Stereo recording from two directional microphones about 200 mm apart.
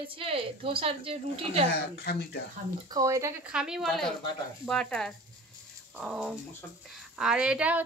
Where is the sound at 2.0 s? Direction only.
55° left (ahead or behind).